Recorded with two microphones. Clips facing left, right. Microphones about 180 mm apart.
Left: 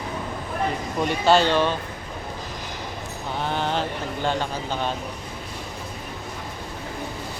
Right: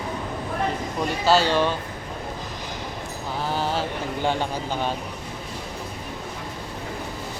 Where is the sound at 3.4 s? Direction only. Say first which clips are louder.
Even; 5° right (ahead or behind).